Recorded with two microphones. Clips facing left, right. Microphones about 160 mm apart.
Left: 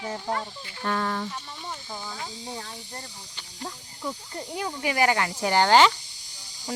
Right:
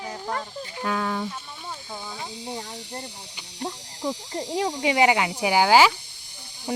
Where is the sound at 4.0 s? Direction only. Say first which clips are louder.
Right 5 dB; 90° right.